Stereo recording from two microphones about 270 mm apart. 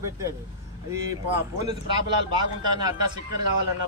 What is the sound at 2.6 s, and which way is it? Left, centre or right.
Speech, centre.